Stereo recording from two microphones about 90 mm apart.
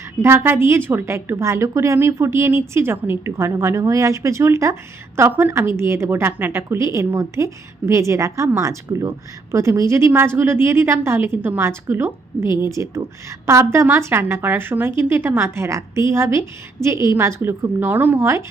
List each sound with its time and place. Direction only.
0.2 s a woman's voice: 25° right (ahead or behind)